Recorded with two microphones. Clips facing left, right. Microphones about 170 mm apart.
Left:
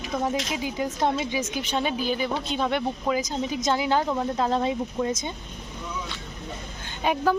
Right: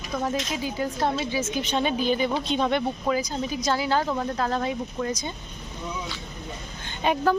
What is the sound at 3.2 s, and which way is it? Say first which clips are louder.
Speech: left 1 dB; 20° left (ahead or behind).